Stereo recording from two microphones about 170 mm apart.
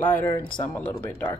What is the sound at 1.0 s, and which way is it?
Speech, 10° left (ahead or behind).